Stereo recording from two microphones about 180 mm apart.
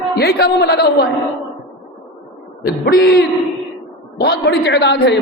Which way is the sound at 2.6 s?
65° left (ahead or behind).